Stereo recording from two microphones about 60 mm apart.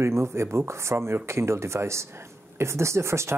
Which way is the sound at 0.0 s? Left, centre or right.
Right.